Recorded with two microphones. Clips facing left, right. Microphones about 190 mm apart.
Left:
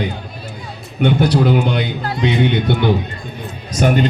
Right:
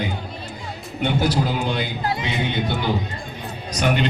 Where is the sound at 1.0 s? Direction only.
65° left (ahead or behind).